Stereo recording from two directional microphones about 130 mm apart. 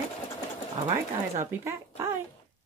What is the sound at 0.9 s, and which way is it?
Speech, 20° right (ahead or behind).